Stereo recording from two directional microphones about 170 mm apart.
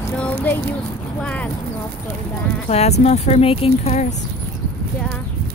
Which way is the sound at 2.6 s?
40° left (ahead or behind).